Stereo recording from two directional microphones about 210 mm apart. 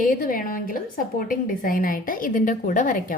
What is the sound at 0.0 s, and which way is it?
A woman's voice, 40° left (ahead or behind).